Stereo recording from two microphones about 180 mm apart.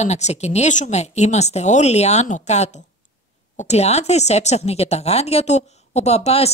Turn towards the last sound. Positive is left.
turn(degrees=35)  # may be behind; listen again after turning